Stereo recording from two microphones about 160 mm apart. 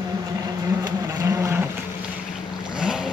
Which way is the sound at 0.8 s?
20° right (ahead or behind).